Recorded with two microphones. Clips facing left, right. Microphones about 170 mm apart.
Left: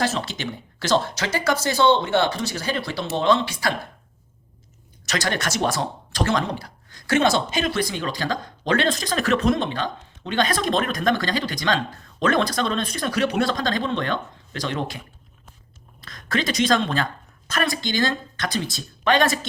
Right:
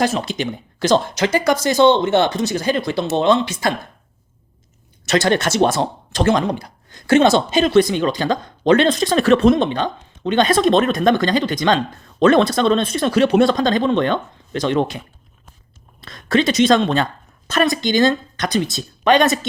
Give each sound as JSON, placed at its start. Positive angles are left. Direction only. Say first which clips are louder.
{"t": 0.0, "sound": "speech", "louder": "right 5 dB", "side_deg": -15}
{"t": 5.0, "sound": "a woman's voice", "louder": "right 9 dB", "side_deg": -25}